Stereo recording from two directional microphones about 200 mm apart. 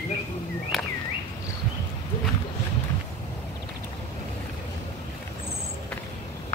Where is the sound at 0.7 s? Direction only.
Centre (ahead or behind).